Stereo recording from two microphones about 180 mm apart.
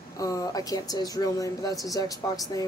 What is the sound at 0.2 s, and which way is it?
Speech, 20° left (ahead or behind).